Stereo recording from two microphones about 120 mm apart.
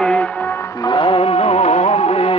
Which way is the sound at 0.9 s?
45° left (ahead or behind).